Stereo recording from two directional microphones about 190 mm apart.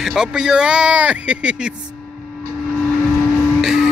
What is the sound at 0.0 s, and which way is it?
Speech, 5° right (ahead or behind).